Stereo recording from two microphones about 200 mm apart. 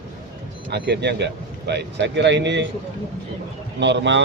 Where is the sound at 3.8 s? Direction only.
60° right (ahead or behind).